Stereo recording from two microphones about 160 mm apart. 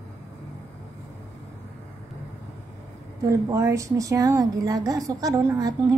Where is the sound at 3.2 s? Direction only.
20° right (ahead or behind).